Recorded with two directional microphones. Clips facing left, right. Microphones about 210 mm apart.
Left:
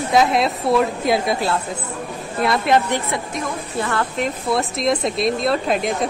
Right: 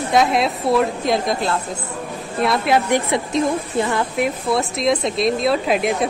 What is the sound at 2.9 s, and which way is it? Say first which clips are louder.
Speech: right 5 dB; 20° right (ahead or behind).